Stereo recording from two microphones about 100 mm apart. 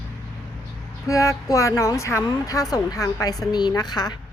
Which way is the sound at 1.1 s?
30° left (ahead or behind).